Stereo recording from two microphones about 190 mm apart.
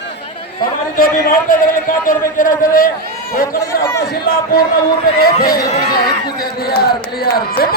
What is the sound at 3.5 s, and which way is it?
Speech, 15° left (ahead or behind).